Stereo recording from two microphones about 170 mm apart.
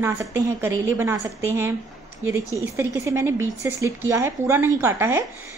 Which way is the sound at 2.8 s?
15° right (ahead or behind).